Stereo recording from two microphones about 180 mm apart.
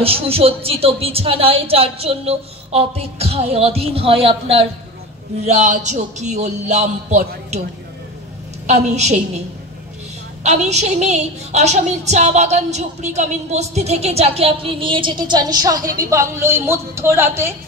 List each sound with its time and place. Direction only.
0.0 s a woman's voice: 30° right (ahead or behind)
8.6 s a woman's voice: 40° right (ahead or behind)
10.4 s a woman's voice: 40° right (ahead or behind); by 17.6 s 15° right (ahead or behind)